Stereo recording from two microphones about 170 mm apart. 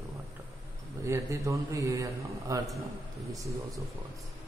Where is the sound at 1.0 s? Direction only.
15° right (ahead or behind).